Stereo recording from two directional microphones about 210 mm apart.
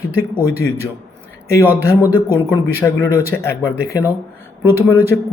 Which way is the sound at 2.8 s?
10° left (ahead or behind).